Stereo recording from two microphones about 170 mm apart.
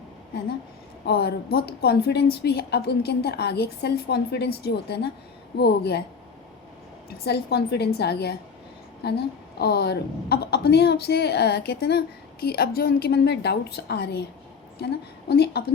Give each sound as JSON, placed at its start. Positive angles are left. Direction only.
{"t": 1.0, "sound": "a woman's voice", "side_deg": 70}
{"t": 7.3, "sound": "a woman's voice", "side_deg": 75}